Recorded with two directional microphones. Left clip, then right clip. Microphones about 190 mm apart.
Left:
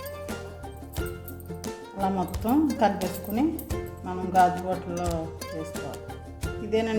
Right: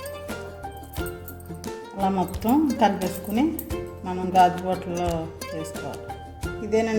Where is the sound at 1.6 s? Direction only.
Centre (ahead or behind).